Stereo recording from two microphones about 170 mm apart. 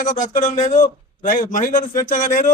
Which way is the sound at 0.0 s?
50° left (ahead or behind).